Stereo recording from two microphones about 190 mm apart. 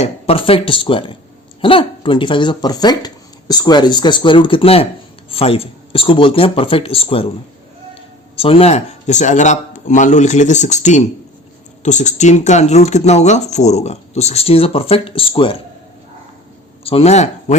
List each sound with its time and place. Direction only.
0.0 s speech: 30° left (ahead or behind)
8.4 s speech: 30° left (ahead or behind)
16.8 s speech: 30° left (ahead or behind)